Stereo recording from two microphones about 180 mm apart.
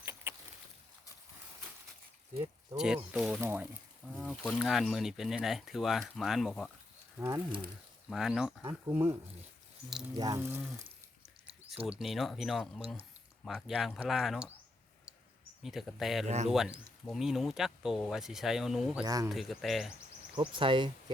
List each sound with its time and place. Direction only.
0.0 s a sound: 15° right (ahead or behind)
2.7 s speech: 5° right (ahead or behind)
7.2 s speech: 15° right (ahead or behind)
8.1 s speech: centre (ahead or behind)
8.9 s speech: 15° right (ahead or behind)
10.2 s speech: 20° right (ahead or behind)
11.9 s speech: centre (ahead or behind)
15.6 s speech: centre (ahead or behind)
16.2 s speech: 40° right (ahead or behind)
16.5 s speech: centre (ahead or behind)
19.0 s speech: 20° right (ahead or behind)
19.3 s speech: centre (ahead or behind)
20.6 s speech: 25° right (ahead or behind)